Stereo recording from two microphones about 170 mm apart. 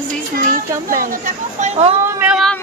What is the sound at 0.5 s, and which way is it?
Speech, 55° right (ahead or behind).